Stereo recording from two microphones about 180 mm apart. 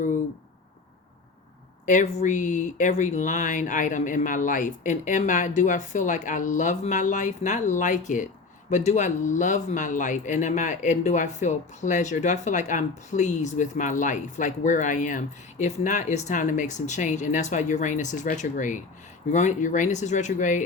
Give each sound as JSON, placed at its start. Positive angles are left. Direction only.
{"t": 1.9, "sound": "speech", "side_deg": 45}